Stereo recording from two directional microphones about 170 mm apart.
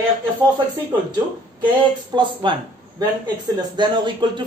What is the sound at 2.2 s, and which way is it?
Speech, 30° right (ahead or behind).